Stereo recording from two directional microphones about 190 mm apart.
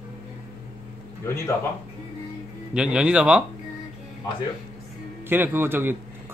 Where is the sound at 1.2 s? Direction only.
15° left (ahead or behind).